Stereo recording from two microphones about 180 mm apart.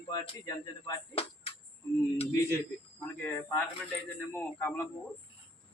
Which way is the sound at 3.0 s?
10° left (ahead or behind).